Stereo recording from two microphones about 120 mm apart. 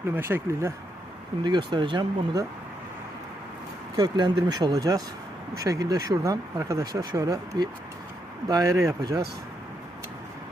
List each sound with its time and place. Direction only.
0.2 s speech: 20° right (ahead or behind)
1.5 s speech: 40° right (ahead or behind)
4.0 s speech: 35° right (ahead or behind)